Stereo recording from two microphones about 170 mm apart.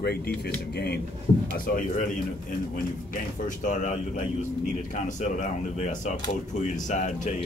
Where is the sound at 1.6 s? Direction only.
55° left (ahead or behind).